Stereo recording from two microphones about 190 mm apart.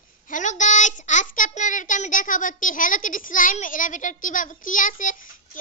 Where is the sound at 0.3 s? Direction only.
40° left (ahead or behind).